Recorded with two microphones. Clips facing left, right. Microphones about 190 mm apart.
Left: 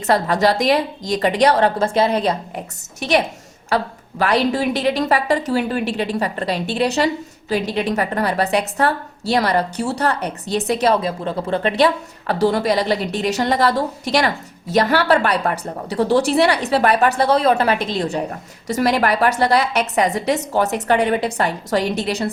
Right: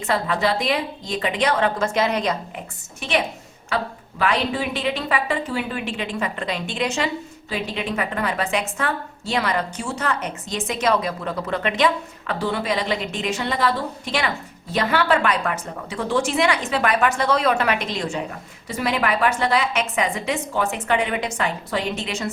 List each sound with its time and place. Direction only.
0.1 s a woman's voice: 40° left (ahead or behind)